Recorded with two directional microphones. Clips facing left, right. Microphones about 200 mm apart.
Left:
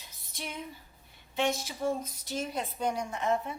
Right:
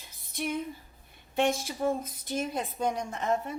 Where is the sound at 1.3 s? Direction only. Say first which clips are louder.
Right 3 dB; 50° right (ahead or behind).